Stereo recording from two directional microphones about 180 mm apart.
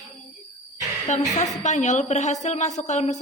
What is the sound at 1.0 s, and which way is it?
A woman's voice, 40° left (ahead or behind).